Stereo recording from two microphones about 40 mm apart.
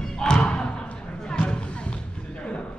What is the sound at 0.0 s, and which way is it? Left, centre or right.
Thump, centre.